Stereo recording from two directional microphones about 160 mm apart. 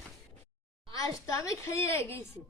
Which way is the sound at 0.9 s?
20° left (ahead or behind).